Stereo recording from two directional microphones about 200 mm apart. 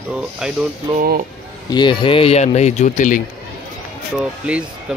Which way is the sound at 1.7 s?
25° left (ahead or behind).